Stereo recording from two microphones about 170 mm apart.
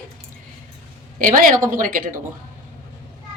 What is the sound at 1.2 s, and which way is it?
Speech, 50° right (ahead or behind).